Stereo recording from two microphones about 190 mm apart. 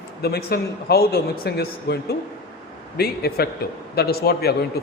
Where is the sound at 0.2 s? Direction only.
55° left (ahead or behind).